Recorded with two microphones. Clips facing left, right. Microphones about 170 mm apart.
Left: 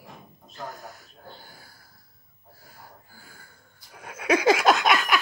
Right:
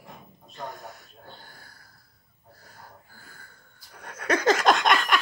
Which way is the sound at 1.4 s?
5° left (ahead or behind).